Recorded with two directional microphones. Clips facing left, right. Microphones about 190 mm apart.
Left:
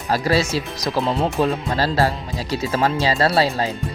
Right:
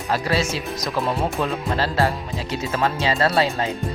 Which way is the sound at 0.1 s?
35° left (ahead or behind).